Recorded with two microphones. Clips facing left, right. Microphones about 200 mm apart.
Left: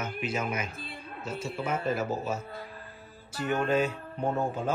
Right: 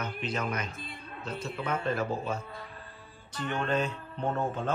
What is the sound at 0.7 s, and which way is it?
Speech, 30° left (ahead or behind).